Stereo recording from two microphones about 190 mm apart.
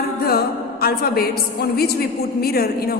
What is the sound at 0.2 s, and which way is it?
A woman's voice, 55° left (ahead or behind).